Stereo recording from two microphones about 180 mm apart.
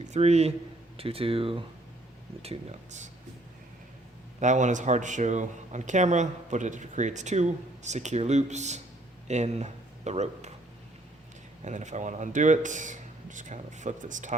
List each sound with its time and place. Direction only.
0.0 s speech: 40° right (ahead or behind)
4.4 s speech: 40° right (ahead or behind)
11.6 s speech: 40° right (ahead or behind)